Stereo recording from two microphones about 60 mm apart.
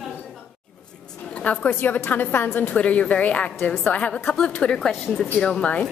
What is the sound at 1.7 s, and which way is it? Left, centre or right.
Speech, left.